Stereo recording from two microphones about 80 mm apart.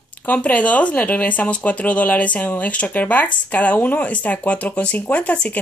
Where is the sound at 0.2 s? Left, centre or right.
Centre.